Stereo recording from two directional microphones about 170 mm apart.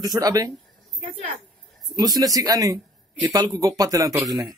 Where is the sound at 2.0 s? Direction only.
20° right (ahead or behind).